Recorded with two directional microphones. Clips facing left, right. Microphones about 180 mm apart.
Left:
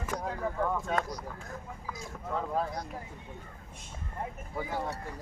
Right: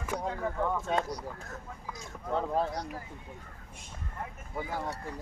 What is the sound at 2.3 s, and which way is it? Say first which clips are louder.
Speech: right 2 dB; 30° right (ahead or behind).